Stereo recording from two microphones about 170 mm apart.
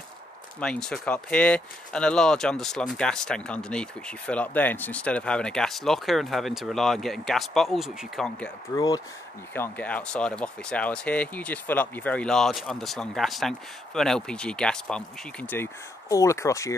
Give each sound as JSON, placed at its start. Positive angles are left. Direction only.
{"t": 0.6, "sound": "speech", "side_deg": 5}
{"t": 8.7, "sound": "speech", "side_deg": 20}
{"t": 9.5, "sound": "speech", "side_deg": 10}